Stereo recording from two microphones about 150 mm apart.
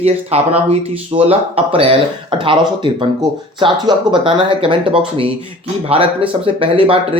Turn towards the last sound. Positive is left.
turn(degrees=-35)  # may be behind; listen again after turning